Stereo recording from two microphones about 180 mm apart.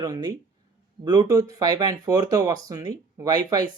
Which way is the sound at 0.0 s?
20° right (ahead or behind).